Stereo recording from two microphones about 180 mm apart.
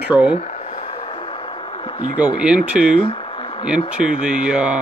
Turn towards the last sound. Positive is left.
turn(degrees=-5)  # may be behind; listen again after turning